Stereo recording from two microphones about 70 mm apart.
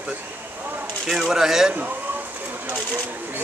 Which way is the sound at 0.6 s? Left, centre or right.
Right.